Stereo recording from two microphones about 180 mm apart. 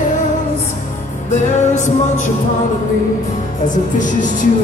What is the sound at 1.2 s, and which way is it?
Music, 40° left (ahead or behind).